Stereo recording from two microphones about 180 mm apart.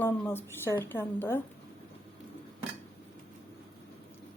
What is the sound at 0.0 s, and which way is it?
A woman's voice, 10° left (ahead or behind).